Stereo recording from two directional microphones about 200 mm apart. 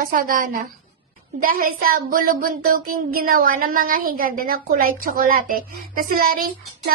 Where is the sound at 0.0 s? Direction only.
45° right (ahead or behind).